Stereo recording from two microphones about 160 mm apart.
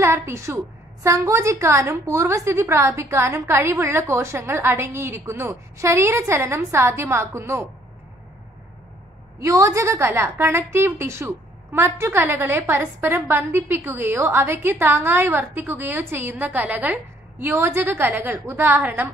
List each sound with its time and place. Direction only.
0.0 s a sound: 15° right (ahead or behind)
1.0 s a woman's voice: 20° right (ahead or behind)
9.4 s a woman's voice: 20° right (ahead or behind)